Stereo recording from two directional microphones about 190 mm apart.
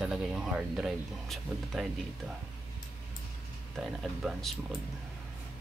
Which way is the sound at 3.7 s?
Centre (ahead or behind).